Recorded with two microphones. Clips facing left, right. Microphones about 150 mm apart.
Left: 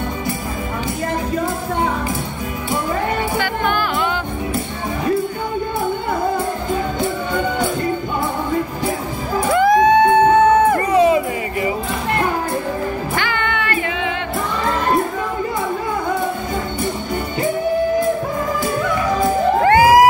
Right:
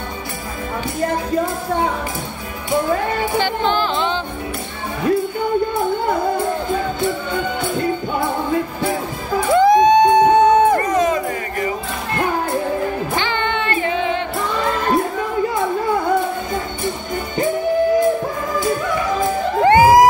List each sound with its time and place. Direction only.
3.3 s music: 25° right (ahead or behind)
9.5 s music: 20° right (ahead or behind)
10.8 s a sound: 10° left (ahead or behind)
13.1 s music: 25° right (ahead or behind)
19.6 s crowd: 20° right (ahead or behind)